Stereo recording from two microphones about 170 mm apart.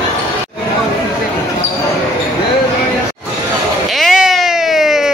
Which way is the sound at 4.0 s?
Centre (ahead or behind).